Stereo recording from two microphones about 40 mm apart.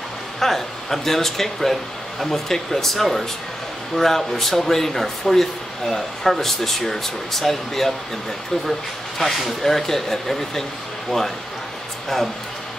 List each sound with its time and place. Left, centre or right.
0.4 s a man's voice: centre
9.2 s a man's voice: centre